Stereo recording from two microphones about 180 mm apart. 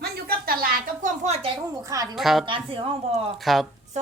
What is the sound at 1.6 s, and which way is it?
Speech, 20° right (ahead or behind).